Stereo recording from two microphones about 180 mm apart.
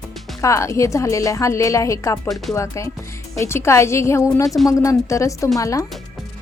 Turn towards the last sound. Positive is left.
turn(degrees=20)  # may be behind; listen again after turning